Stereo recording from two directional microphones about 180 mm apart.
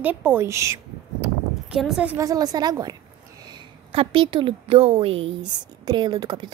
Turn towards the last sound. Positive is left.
turn(degrees=-25)  # may be behind; listen again after turning